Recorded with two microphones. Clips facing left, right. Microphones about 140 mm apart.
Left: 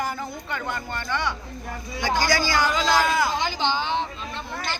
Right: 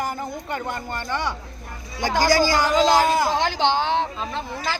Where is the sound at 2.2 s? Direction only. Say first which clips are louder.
Right 5 dB; 40° right (ahead or behind).